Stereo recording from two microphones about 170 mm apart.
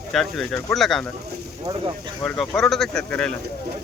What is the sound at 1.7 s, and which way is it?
Speech, 25° right (ahead or behind).